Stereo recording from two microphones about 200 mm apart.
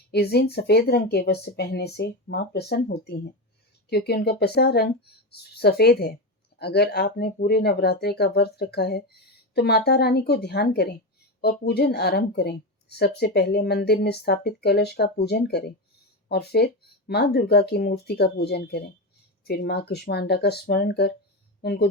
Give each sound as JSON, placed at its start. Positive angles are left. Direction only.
{"t": 0.1, "sound": "speech", "side_deg": 55}